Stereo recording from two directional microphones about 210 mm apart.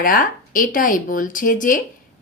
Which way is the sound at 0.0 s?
40° left (ahead or behind).